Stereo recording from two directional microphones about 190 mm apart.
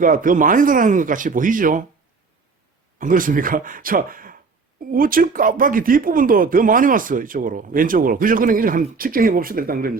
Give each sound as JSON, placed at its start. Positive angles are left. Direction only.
{"t": 0.0, "sound": "speech", "side_deg": -45}
{"t": 3.0, "sound": "speech", "side_deg": -45}